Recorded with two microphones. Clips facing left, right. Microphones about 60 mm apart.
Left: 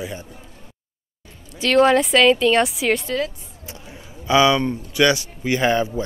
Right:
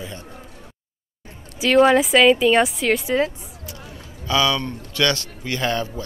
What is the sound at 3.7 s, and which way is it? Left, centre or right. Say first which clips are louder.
Speech: left 3 dB; left.